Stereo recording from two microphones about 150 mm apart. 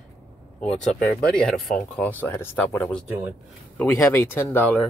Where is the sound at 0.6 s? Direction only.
5° left (ahead or behind).